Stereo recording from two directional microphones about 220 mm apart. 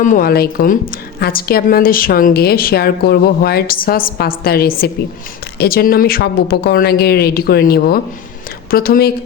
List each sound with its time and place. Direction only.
0.0 s a woman's voice: 40° left (ahead or behind)